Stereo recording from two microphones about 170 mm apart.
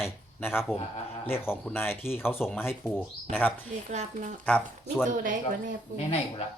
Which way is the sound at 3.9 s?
45° right (ahead or behind).